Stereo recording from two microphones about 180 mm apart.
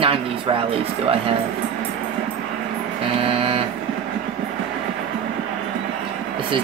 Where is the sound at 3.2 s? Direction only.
30° right (ahead or behind).